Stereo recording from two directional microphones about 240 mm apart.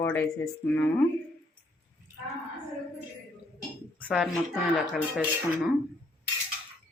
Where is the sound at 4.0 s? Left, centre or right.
Centre.